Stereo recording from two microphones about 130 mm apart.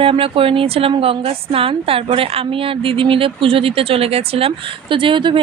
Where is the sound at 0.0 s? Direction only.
45° right (ahead or behind).